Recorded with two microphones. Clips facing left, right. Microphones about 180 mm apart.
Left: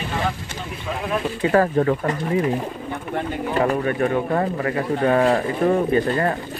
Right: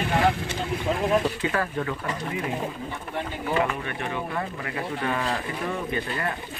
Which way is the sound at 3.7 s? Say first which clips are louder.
Left 11 dB; 40° left (ahead or behind).